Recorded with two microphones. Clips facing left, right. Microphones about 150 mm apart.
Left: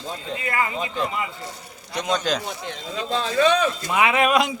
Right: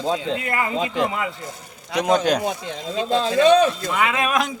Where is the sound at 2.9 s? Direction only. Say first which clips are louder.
Right 5 dB; 35° right (ahead or behind).